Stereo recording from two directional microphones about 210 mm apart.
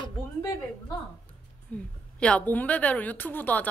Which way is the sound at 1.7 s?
5° left (ahead or behind).